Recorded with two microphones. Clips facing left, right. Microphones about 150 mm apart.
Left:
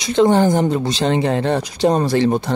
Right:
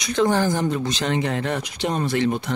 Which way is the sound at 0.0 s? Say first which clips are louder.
Left 6 dB; 25° left (ahead or behind).